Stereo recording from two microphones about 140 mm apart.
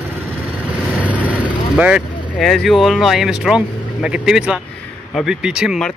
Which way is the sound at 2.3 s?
Centre (ahead or behind).